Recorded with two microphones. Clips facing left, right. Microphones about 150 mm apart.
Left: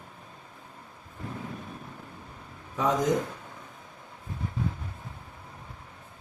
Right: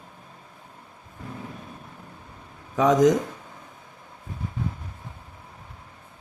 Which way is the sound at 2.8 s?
90° right.